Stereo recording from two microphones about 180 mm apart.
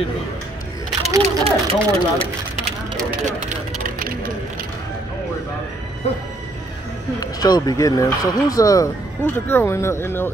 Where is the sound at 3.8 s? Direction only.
50° right (ahead or behind).